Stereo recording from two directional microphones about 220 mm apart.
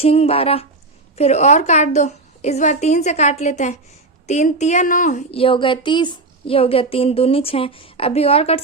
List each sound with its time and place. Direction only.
0.0 s a woman's voice: 25° left (ahead or behind)